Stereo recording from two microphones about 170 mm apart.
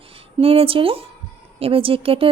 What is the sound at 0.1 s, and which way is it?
Speech, 35° right (ahead or behind).